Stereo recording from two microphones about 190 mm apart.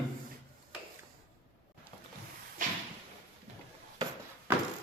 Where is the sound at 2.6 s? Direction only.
45° right (ahead or behind).